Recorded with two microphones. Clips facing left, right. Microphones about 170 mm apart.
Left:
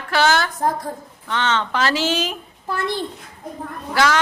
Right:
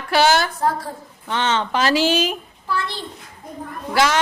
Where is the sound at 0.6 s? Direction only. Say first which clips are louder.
Even; 15° left (ahead or behind).